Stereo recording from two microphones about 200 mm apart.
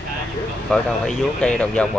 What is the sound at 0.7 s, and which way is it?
Speech, 5° left (ahead or behind).